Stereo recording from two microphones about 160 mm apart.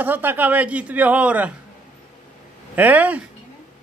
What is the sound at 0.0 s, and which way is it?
Speech, 10° right (ahead or behind).